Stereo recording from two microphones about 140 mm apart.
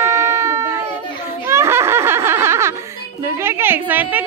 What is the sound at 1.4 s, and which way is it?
Laughter, 20° right (ahead or behind).